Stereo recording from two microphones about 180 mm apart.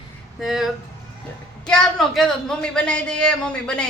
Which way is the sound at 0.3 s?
Centre (ahead or behind).